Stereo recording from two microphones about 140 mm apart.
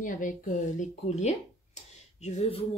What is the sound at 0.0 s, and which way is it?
Speech, 65° left (ahead or behind).